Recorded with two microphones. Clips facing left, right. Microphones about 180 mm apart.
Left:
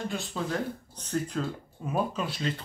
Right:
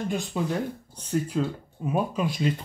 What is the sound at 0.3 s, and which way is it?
Speech, 15° right (ahead or behind).